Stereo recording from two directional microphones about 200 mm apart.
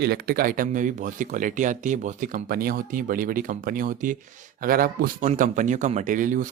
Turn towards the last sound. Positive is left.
turn(degrees=-40)  # may be behind; listen again after turning